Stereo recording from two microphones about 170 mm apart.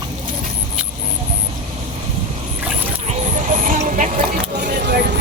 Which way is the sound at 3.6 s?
50° right (ahead or behind).